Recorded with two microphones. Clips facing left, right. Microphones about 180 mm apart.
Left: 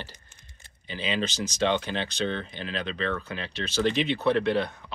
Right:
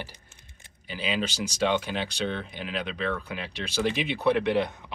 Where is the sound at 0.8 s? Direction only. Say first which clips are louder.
Even; 5° right (ahead or behind).